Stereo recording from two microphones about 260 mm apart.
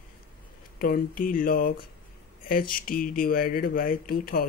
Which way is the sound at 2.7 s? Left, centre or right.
Left.